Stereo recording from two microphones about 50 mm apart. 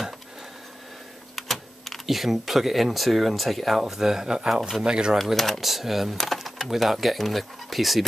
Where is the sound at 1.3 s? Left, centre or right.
Centre.